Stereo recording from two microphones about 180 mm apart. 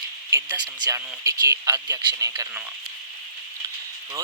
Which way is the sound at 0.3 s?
15° right (ahead or behind).